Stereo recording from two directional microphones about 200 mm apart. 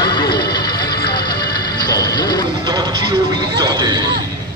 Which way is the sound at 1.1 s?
50° left (ahead or behind).